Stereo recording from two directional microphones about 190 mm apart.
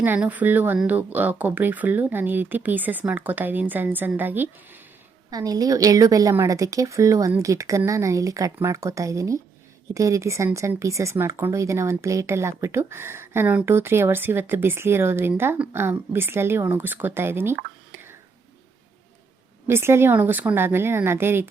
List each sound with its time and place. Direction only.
0.0 s speech: 10° right (ahead or behind)
19.6 s speech: 15° right (ahead or behind)